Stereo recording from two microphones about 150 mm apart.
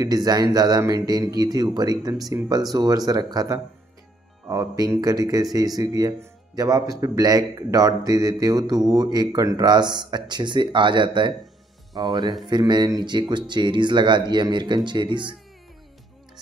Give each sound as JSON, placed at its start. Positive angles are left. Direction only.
{"t": 0.0, "sound": "speech", "side_deg": -25}